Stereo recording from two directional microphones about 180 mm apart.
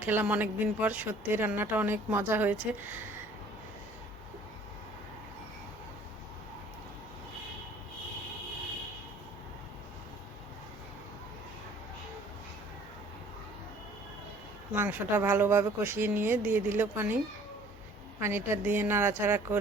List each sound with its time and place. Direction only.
0.0 s speech: 10° right (ahead or behind)
14.7 s speech: 10° right (ahead or behind)
18.2 s speech: 15° right (ahead or behind)